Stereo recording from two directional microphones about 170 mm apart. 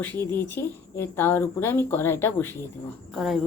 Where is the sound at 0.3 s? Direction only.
15° left (ahead or behind).